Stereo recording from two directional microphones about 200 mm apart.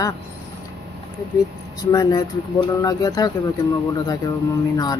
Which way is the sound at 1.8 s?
20° left (ahead or behind).